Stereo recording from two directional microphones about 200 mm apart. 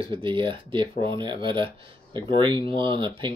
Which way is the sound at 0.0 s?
25° right (ahead or behind).